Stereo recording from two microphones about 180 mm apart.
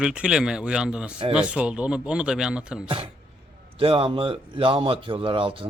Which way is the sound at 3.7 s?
30° right (ahead or behind).